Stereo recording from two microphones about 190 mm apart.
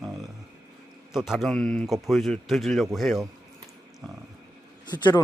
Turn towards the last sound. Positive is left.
turn(degrees=20)  # may be behind; listen again after turning